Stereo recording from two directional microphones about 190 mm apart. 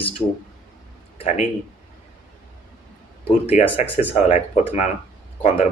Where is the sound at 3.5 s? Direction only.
35° left (ahead or behind).